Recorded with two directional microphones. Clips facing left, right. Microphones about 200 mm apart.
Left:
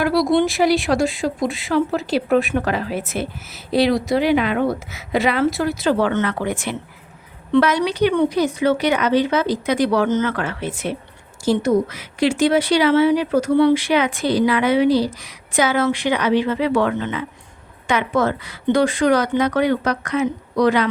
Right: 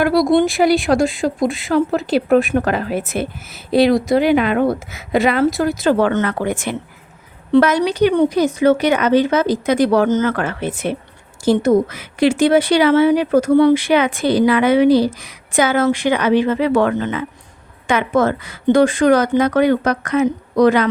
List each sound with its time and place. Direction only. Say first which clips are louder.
0.0 s speech: right 3 dB; 50° right (ahead or behind)